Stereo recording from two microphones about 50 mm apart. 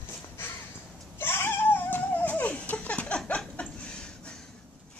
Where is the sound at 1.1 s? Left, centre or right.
Left; by 4.4 s centre.